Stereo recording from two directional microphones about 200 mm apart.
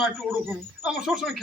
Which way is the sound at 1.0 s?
Centre (ahead or behind).